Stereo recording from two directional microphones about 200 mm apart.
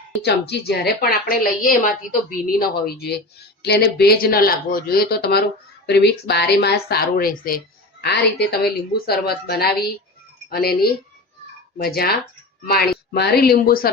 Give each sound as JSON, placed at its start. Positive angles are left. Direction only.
{"t": 0.2, "sound": "speech", "side_deg": 55}